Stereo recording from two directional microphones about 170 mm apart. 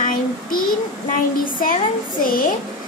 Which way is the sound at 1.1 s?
55° left (ahead or behind).